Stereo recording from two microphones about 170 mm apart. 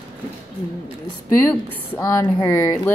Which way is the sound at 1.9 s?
15° left (ahead or behind).